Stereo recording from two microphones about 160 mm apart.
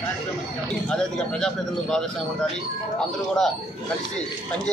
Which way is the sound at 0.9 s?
5° left (ahead or behind).